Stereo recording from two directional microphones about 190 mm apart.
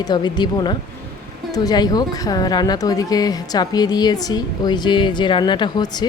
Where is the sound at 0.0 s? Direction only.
20° left (ahead or behind).